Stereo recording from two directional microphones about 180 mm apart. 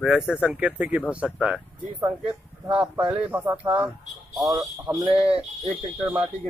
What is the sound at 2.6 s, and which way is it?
A man's voice, 5° right (ahead or behind).